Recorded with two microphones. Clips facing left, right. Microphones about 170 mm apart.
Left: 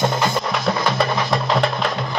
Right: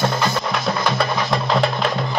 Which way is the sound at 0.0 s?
20° left (ahead or behind).